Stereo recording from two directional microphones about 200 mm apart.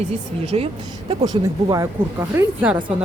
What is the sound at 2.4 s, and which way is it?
Speech, 10° right (ahead or behind).